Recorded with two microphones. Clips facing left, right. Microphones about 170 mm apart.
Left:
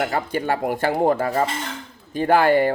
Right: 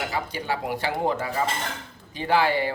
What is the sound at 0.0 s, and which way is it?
Speech, 55° left (ahead or behind).